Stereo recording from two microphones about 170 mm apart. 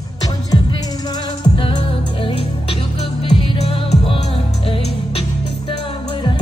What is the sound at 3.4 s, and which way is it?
Music, 35° left (ahead or behind).